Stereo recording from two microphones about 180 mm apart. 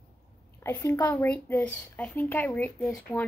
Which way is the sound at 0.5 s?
15° left (ahead or behind).